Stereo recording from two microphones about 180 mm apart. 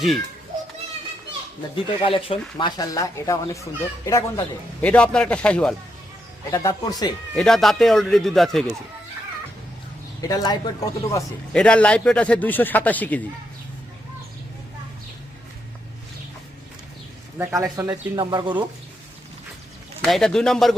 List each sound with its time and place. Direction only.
1.7 s speech: 30° left (ahead or behind); by 5.7 s 5° left (ahead or behind)
6.5 s speech: 15° left (ahead or behind)
7.3 s speech: centre (ahead or behind)
10.2 s a man's voice: 20° left (ahead or behind)
11.5 s speech: 5° left (ahead or behind)
17.3 s speech: 15° right (ahead or behind)
20.0 s speech: centre (ahead or behind)